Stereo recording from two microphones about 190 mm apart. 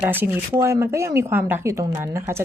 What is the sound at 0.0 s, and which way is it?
A woman's voice, 10° right (ahead or behind).